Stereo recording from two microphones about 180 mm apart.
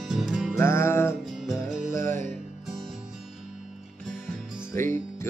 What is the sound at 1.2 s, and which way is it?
Music, centre (ahead or behind).